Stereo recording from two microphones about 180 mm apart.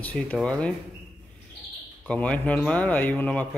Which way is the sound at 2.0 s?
5° left (ahead or behind).